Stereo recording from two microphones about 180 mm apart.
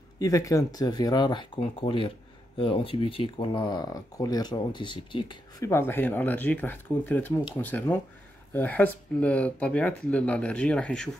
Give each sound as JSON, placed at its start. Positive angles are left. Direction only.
{"t": 0.2, "sound": "speech", "side_deg": 15}
{"t": 5.7, "sound": "speech", "side_deg": 15}